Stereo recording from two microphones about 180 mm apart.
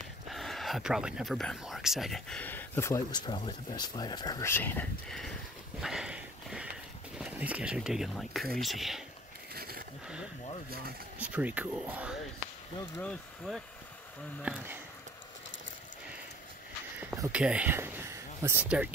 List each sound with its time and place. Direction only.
0.3 s speech: centre (ahead or behind)
5.8 s sniff: 5° right (ahead or behind)
7.2 s speech: 5° right (ahead or behind)
9.5 s a sound: 55° right (ahead or behind)
11.1 s speech: 10° right (ahead or behind)
13.5 s speech: 5° left (ahead or behind)
14.4 s speech: 10° right (ahead or behind)
17.0 s speech: 10° right (ahead or behind)